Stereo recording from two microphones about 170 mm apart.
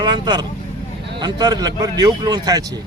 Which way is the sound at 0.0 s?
25° right (ahead or behind).